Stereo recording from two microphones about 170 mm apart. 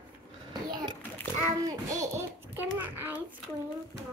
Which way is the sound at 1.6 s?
20° right (ahead or behind).